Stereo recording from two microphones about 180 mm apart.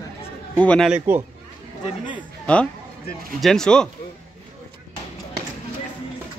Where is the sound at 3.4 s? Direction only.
5° left (ahead or behind).